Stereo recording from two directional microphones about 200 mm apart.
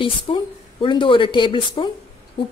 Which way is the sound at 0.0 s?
25° left (ahead or behind).